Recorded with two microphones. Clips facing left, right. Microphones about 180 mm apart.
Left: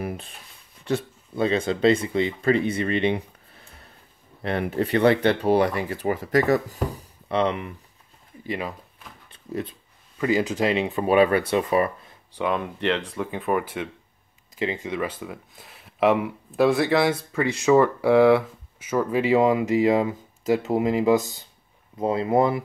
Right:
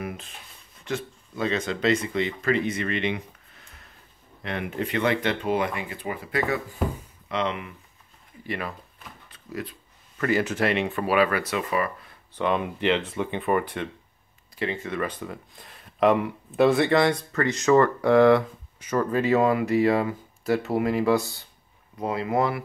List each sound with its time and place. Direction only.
0.0 s a sound: 35° left (ahead or behind)
0.8 s speech: 30° left (ahead or behind)
4.4 s speech: 35° left (ahead or behind)
8.5 s speech: 15° left (ahead or behind)
9.3 s a sound: 25° left (ahead or behind)
10.1 s speech: 15° left (ahead or behind); by 12.1 s 30° left (ahead or behind)
12.4 s speech: centre (ahead or behind)
14.5 s speech: 20° left (ahead or behind)